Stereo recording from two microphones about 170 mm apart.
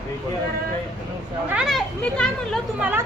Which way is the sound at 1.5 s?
5° right (ahead or behind).